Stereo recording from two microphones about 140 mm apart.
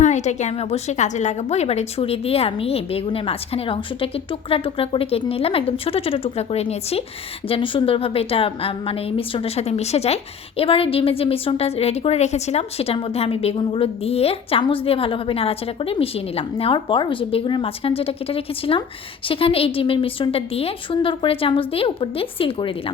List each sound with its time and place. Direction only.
0.0 s a woman's voice: 55° left (ahead or behind); by 22.7 s 40° left (ahead or behind)